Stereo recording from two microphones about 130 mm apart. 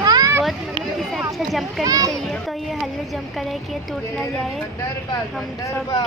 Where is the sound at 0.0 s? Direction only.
30° right (ahead or behind).